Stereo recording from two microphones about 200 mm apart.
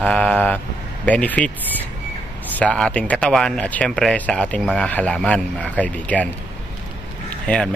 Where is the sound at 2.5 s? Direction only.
5° left (ahead or behind).